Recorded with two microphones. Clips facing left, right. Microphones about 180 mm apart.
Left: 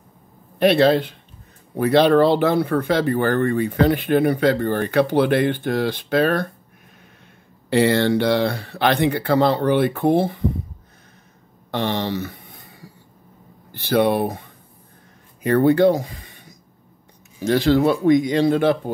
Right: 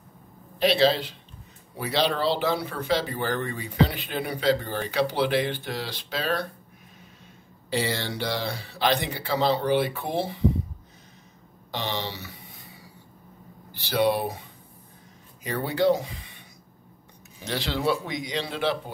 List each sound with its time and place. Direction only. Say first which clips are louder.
0.6 s speech: left 6 dB; 55° left (ahead or behind)
7.7 s speech: left 12 dB; 60° left (ahead or behind)
11.7 s speech: left 8 dB; 55° left (ahead or behind)
13.7 s speech: left 5 dB; 55° left (ahead or behind)